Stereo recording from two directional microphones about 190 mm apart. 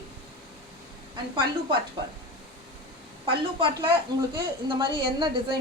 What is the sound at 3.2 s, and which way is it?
A woman's voice, 25° right (ahead or behind).